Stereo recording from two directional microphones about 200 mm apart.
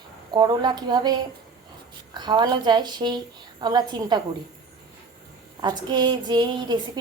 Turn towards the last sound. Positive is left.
turn(degrees=-20)  # may be behind; listen again after turning